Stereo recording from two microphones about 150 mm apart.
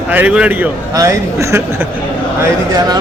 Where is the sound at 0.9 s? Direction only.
20° right (ahead or behind).